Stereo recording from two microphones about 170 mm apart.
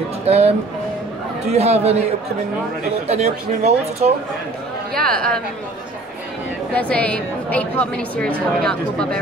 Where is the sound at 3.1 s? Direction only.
40° right (ahead or behind).